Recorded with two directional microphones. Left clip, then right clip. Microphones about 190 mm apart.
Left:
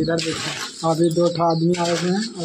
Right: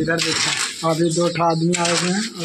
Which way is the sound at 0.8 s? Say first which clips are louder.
Left 2 dB; 15° right (ahead or behind).